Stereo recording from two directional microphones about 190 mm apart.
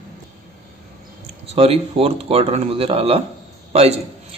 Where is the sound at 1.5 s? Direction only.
30° right (ahead or behind).